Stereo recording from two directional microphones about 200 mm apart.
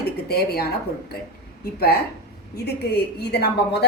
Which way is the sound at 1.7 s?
50° left (ahead or behind).